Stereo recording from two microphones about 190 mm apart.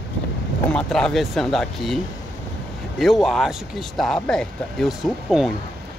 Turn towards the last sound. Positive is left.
turn(degrees=0)  # may be behind; listen again after turning